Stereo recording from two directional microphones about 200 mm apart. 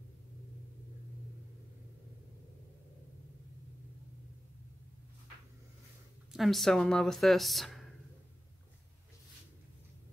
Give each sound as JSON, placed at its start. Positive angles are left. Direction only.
{"t": 6.3, "sound": "a woman's voice", "side_deg": 0}